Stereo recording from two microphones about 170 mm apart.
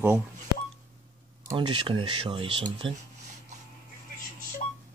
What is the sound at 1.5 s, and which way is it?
Speech, 30° right (ahead or behind).